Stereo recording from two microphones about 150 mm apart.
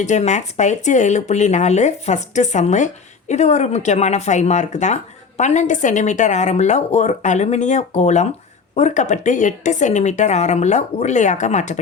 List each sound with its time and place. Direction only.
0.0 s speech: 50° left (ahead or behind)